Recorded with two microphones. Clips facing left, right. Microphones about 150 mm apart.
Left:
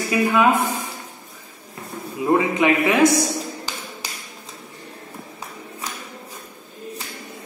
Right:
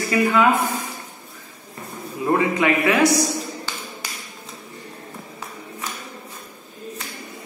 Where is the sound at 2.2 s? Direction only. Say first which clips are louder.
Left 1 dB; 15° left (ahead or behind).